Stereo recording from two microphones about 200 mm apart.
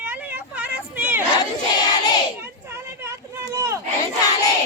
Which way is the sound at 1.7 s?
20° left (ahead or behind).